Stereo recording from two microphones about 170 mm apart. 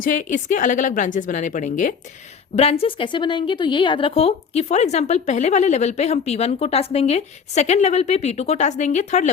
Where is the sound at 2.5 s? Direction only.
35° left (ahead or behind).